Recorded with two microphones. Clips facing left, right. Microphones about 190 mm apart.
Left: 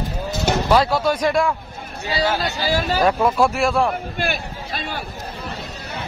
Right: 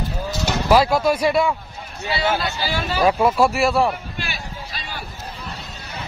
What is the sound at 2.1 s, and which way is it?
Speech, 40° left (ahead or behind).